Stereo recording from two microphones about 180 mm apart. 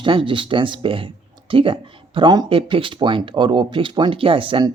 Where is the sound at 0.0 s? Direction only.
25° right (ahead or behind).